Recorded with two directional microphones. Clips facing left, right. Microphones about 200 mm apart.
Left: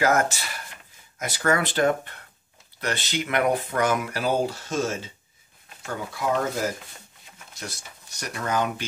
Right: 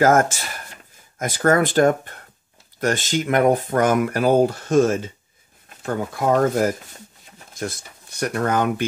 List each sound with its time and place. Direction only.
0.0 s speech: 45° right (ahead or behind)